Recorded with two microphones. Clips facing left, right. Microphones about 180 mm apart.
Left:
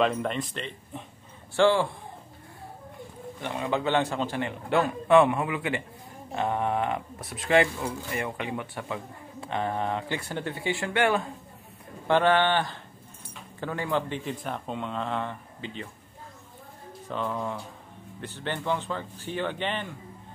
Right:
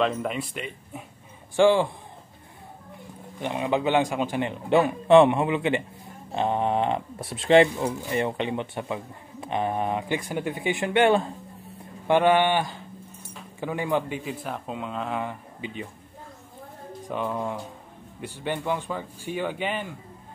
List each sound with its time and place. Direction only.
0.0 s a man's voice: 5° right (ahead or behind)
3.3 s a man's voice: 15° right (ahead or behind)
17.1 s a man's voice: 15° right (ahead or behind)